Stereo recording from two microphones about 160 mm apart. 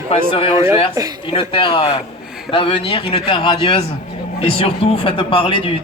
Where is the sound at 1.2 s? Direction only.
35° left (ahead or behind).